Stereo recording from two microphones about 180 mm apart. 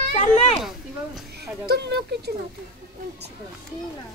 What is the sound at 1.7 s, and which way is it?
Speech, 65° right (ahead or behind).